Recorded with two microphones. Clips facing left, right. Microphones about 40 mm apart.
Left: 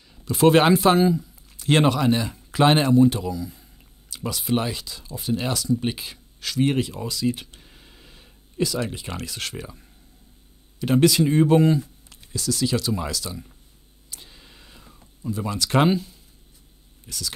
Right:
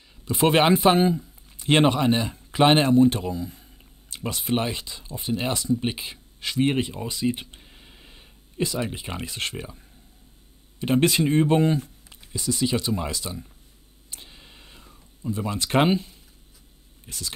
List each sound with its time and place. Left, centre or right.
0.1 s speech: centre
0.9 s speech: right
1.6 s speech: right
3.1 s speech: right
7.6 s a sound: centre
10.8 s speech: right
11.6 s speech: right
12.1 s speech: centre
14.1 s vehicle: centre
15.2 s speech: centre
15.5 s speech: right
17.1 s speech: right